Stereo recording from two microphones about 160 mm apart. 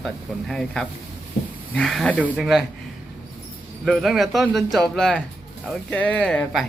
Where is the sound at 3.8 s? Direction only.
Centre (ahead or behind).